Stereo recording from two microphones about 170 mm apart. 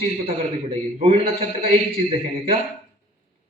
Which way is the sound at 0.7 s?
35° right (ahead or behind).